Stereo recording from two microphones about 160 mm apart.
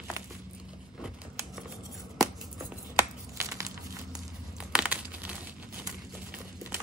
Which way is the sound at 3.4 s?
20° right (ahead or behind).